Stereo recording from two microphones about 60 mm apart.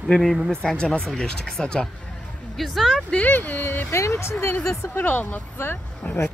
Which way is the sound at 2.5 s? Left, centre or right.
Centre.